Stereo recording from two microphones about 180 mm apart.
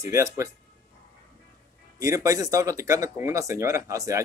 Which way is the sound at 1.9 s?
20° right (ahead or behind).